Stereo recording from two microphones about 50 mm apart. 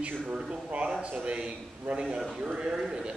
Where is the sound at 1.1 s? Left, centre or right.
Right.